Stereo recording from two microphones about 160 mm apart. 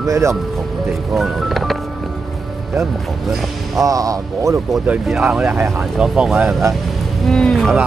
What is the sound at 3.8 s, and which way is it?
Speech, 20° right (ahead or behind).